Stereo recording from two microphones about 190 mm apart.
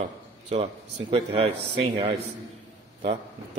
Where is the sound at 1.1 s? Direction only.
30° right (ahead or behind).